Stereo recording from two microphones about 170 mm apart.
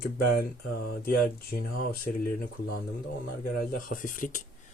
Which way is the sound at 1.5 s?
60° left (ahead or behind).